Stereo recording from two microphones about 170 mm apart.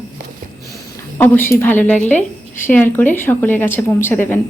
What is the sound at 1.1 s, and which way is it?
A woman's voice, 10° left (ahead or behind).